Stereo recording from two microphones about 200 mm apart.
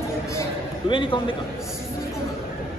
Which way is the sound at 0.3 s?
20° left (ahead or behind).